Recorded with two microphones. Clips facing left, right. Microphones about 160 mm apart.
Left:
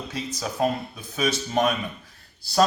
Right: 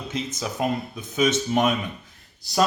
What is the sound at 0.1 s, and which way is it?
A man's voice, 20° right (ahead or behind).